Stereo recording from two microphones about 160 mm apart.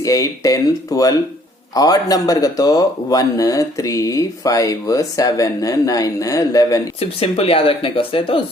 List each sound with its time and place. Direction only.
0.0 s speech: 20° left (ahead or behind)
7.0 s speech: 35° left (ahead or behind)